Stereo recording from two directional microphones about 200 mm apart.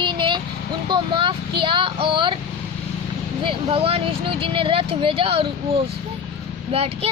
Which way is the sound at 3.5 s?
25° right (ahead or behind).